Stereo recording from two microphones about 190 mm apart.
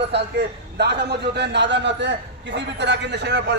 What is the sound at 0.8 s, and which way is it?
A man's voice, 60° right (ahead or behind).